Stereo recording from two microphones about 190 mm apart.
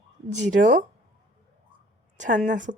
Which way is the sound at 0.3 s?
40° right (ahead or behind).